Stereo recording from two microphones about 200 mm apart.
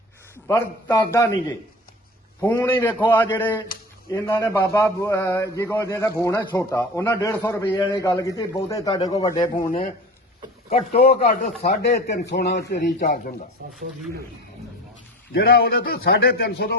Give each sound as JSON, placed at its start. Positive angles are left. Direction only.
{"t": 0.4, "sound": "a man's voice", "side_deg": 15}
{"t": 10.7, "sound": "speech", "side_deg": 30}
{"t": 11.6, "sound": "a man's voice", "side_deg": 50}
{"t": 15.3, "sound": "a man's voice", "side_deg": 50}